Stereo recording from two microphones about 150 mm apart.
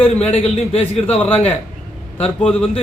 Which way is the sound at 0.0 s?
45° left (ahead or behind).